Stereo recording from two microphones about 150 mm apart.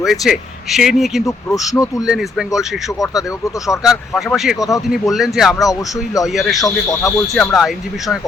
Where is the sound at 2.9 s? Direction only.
20° left (ahead or behind).